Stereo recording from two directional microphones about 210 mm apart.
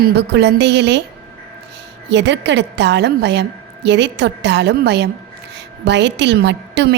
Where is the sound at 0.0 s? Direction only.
55° right (ahead or behind).